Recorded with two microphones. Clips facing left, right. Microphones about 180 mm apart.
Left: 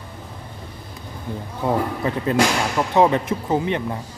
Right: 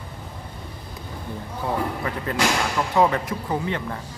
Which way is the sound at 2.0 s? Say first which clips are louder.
Left 7 dB; 25° left (ahead or behind).